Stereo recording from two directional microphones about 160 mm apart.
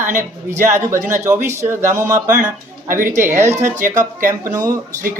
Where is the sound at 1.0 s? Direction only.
55° right (ahead or behind).